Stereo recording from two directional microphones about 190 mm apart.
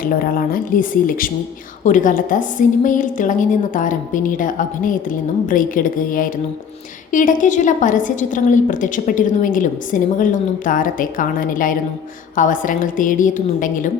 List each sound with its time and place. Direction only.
0.0 s a woman's voice: 50° left (ahead or behind)